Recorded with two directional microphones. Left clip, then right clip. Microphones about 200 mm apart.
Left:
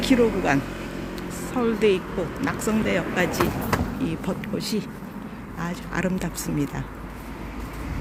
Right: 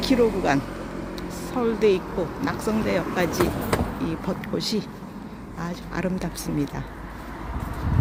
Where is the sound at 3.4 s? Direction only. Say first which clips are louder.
Right 1 dB; 40° right (ahead or behind).